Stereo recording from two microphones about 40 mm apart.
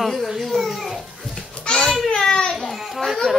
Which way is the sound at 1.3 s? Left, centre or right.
Centre.